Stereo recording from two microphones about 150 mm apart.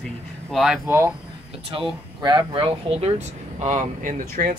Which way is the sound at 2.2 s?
30° right (ahead or behind).